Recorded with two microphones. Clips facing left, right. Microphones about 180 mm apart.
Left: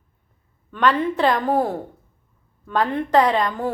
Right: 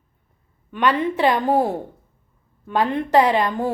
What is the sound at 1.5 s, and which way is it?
Speech, 25° right (ahead or behind).